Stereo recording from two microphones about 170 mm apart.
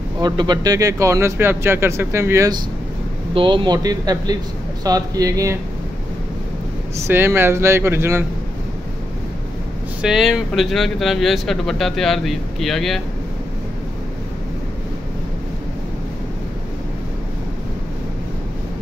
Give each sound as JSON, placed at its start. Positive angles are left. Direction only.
{"t": 0.2, "sound": "speech", "side_deg": -25}
{"t": 7.0, "sound": "speech", "side_deg": -15}
{"t": 10.0, "sound": "speech", "side_deg": -5}